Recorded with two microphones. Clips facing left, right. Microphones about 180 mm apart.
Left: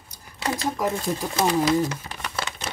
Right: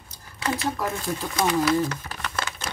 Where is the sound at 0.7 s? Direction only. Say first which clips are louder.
Left 3 dB; 15° left (ahead or behind).